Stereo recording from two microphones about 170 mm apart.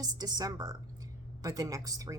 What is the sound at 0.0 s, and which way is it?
A woman's voice, 25° right (ahead or behind).